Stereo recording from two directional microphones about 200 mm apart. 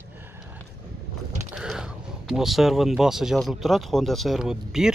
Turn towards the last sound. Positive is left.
turn(degrees=-5)  # may be behind; listen again after turning